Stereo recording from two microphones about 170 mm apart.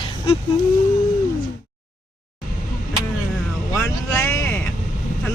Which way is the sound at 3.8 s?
10° left (ahead or behind).